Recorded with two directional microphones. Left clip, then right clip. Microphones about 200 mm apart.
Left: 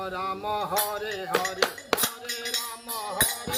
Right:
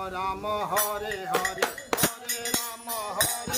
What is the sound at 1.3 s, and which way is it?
Music, 30° left (ahead or behind).